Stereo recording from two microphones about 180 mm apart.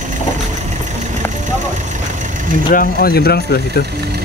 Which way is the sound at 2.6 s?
55° left (ahead or behind).